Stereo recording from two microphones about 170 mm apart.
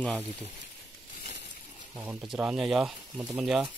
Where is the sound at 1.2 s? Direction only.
90° left.